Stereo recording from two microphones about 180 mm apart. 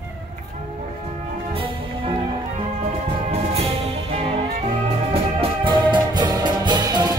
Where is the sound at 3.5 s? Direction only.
35° right (ahead or behind).